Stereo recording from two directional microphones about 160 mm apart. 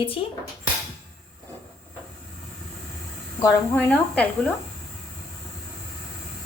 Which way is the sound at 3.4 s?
10° left (ahead or behind).